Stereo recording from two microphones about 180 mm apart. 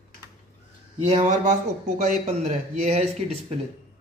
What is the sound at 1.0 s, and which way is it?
A man's voice, 35° right (ahead or behind).